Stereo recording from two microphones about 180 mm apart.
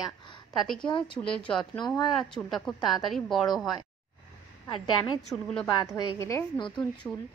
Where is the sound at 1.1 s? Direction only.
5° left (ahead or behind).